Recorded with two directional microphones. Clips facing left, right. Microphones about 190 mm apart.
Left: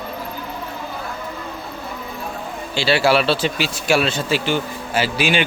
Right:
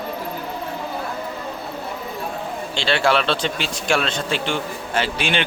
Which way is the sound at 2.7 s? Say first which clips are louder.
Left 3 dB; 5° left (ahead or behind).